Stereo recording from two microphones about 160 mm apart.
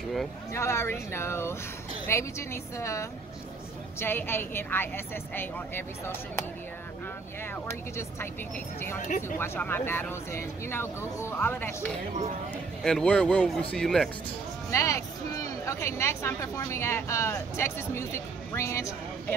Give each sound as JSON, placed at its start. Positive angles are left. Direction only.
{"t": 0.5, "sound": "speech", "side_deg": 15}
{"t": 9.4, "sound": "speech", "side_deg": 15}
{"t": 14.7, "sound": "speech", "side_deg": 20}